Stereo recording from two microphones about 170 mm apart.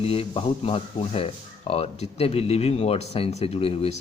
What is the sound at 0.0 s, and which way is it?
Speech, 35° left (ahead or behind).